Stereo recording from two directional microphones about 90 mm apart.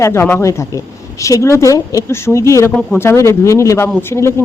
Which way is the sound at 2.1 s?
30° left (ahead or behind).